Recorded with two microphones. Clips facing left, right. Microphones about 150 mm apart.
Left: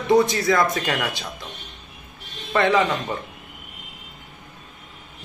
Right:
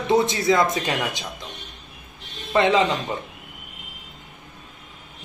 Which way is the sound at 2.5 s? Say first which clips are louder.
Right 1 dB; 20° right (ahead or behind).